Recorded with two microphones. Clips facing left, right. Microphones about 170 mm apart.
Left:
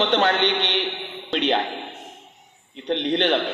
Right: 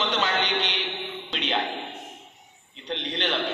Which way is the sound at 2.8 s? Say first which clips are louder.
Left 8 dB; 55° left (ahead or behind).